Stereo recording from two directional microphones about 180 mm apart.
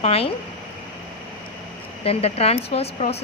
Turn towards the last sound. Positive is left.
turn(degrees=35)  # may be behind; listen again after turning